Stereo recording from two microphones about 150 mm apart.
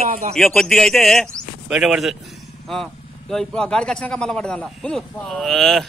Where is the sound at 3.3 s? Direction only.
5° left (ahead or behind).